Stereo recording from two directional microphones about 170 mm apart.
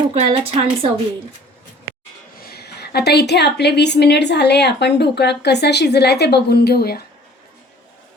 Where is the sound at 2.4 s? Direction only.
65° left (ahead or behind).